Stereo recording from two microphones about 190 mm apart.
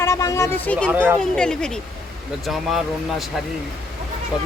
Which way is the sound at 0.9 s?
10° right (ahead or behind).